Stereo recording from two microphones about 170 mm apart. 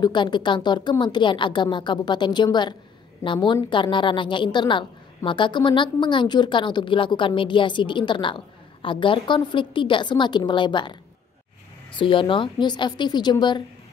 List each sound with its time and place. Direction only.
0.0 s a woman's voice: 25° left (ahead or behind)